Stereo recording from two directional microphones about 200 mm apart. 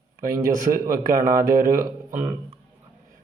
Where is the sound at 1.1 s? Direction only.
45° right (ahead or behind).